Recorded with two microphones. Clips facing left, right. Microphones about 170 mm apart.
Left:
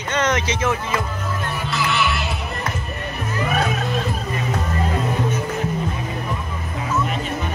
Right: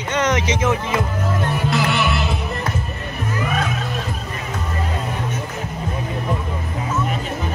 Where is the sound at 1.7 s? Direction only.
50° right (ahead or behind).